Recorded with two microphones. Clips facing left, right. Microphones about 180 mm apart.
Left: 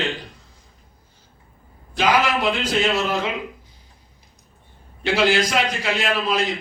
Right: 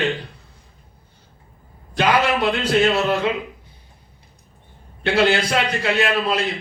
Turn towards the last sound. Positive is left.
turn(degrees=-65)  # may be behind; listen again after turning